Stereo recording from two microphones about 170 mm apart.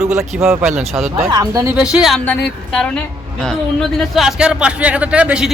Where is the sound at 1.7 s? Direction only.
5° right (ahead or behind).